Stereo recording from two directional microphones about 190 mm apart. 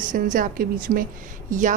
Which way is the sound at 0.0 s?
45° right (ahead or behind).